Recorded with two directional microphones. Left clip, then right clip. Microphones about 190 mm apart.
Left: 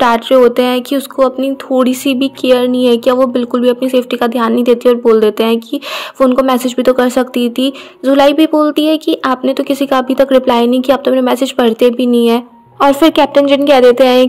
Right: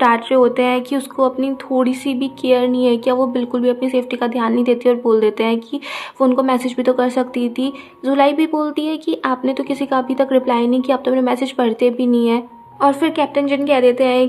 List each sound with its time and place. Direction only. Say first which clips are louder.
0.0 s speech: left 5 dB; 30° left (ahead or behind)